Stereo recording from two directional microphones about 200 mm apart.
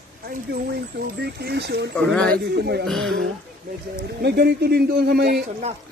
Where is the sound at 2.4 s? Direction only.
55° right (ahead or behind).